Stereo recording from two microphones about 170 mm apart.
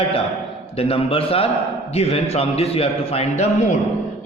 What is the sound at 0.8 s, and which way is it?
A man's voice, 35° left (ahead or behind).